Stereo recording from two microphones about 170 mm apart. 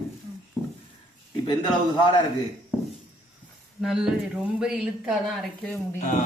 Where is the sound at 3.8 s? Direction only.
5° right (ahead or behind).